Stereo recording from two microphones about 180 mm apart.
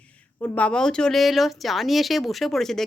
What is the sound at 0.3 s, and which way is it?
A woman's voice, 10° left (ahead or behind).